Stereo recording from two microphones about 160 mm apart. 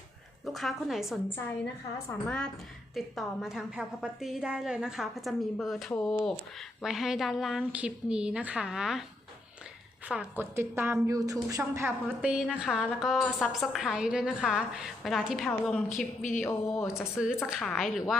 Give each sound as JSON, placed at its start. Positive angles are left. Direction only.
{"t": 0.4, "sound": "speech", "side_deg": 0}
{"t": 2.0, "sound": "a sound", "side_deg": 5}
{"t": 2.9, "sound": "speech", "side_deg": 0}
{"t": 10.1, "sound": "a woman's voice", "side_deg": -5}
{"t": 16.4, "sound": "a sound", "side_deg": 15}
{"t": 17.2, "sound": "speech", "side_deg": -5}